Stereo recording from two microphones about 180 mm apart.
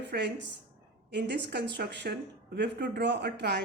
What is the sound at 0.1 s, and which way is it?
Speech, 60° right (ahead or behind).